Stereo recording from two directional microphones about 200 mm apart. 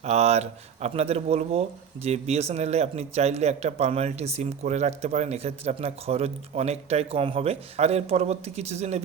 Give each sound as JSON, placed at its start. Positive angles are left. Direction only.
{"t": 0.0, "sound": "speech", "side_deg": -30}